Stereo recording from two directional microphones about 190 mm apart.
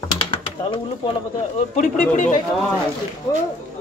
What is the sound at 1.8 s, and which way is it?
Speech, 40° left (ahead or behind).